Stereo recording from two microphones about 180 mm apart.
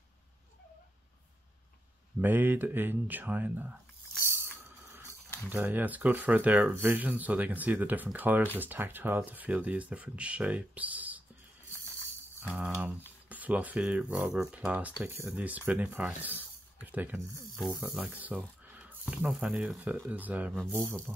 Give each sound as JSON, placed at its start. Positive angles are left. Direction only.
{"t": 2.2, "sound": "speech", "side_deg": -10}
{"t": 5.5, "sound": "speech", "side_deg": -10}
{"t": 12.5, "sound": "speech", "side_deg": -10}